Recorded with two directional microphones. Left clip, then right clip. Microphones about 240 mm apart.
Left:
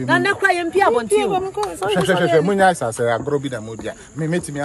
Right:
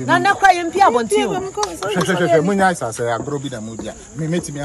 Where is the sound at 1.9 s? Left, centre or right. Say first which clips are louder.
Even; left.